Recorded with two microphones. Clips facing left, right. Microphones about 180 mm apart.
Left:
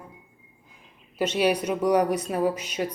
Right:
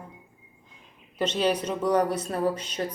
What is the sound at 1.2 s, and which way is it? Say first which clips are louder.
Speech: left 2 dB; 10° left (ahead or behind).